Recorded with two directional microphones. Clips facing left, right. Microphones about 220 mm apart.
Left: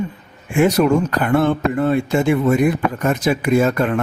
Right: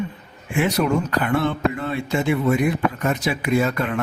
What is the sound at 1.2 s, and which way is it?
Speech, 50° left (ahead or behind).